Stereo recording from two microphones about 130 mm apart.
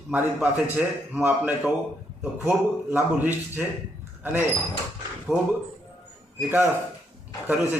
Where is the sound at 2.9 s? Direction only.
15° right (ahead or behind).